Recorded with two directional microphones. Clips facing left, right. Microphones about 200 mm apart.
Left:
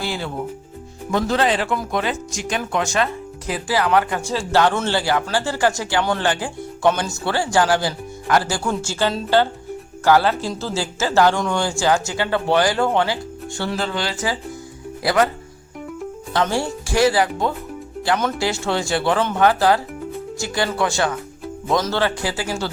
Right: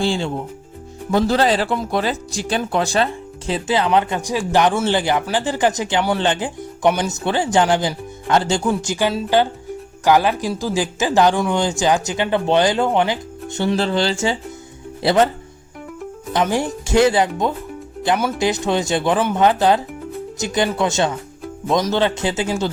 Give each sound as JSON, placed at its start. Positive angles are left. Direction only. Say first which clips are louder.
{"t": 0.0, "sound": "speech", "louder": "right 5 dB", "side_deg": -30}
{"t": 16.3, "sound": "speech", "louder": "right 2 dB", "side_deg": -15}